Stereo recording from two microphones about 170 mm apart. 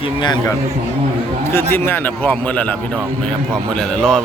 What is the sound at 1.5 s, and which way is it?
A man's voice, 15° left (ahead or behind).